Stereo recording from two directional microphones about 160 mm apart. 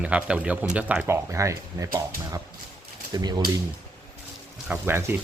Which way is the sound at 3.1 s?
25° right (ahead or behind).